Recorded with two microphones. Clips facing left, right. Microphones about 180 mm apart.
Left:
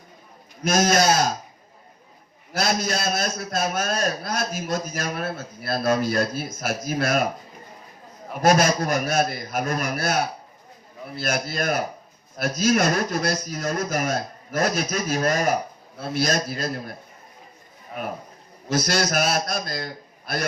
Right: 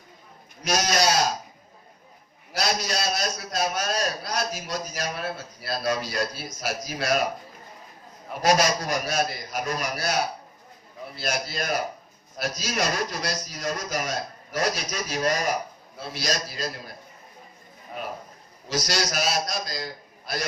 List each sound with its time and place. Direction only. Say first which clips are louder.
0.6 s a man's voice: left 4 dB; 50° left (ahead or behind)
2.5 s a man's voice: left 3 dB; 50° left (ahead or behind)
8.4 s a man's voice: left 3 dB; 50° left (ahead or behind)
18.7 s a man's voice: left 5 dB; 55° left (ahead or behind)